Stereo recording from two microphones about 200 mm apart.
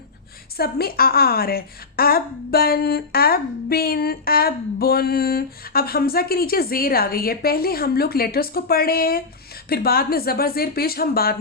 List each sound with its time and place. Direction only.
0.5 s a woman's voice: 50° left (ahead or behind)